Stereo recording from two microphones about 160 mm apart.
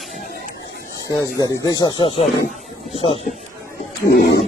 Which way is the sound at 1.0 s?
20° left (ahead or behind).